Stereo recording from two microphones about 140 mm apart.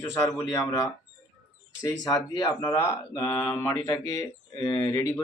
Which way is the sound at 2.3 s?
30° left (ahead or behind).